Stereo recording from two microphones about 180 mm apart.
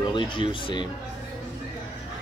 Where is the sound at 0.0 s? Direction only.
25° left (ahead or behind).